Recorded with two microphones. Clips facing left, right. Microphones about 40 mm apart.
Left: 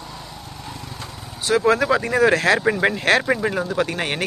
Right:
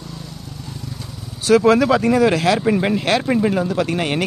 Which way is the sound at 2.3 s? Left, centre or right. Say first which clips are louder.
Right 1 dB; left.